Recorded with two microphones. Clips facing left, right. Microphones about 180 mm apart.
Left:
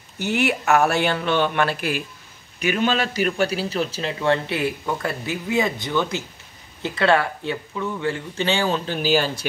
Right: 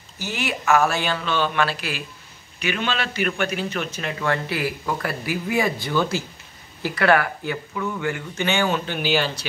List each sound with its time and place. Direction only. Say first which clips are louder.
0.2 s speech: left 6 dB; 60° left (ahead or behind)
2.6 s a man's voice: left 4 dB; 40° left (ahead or behind)